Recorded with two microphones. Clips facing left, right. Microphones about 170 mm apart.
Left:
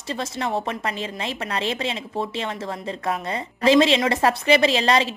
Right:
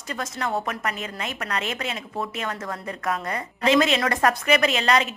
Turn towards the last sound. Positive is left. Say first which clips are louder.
# left 2 dB
turn(degrees=30)  # may be behind; listen again after turning